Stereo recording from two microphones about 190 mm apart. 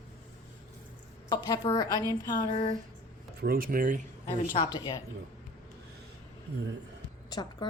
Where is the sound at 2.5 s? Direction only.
35° left (ahead or behind).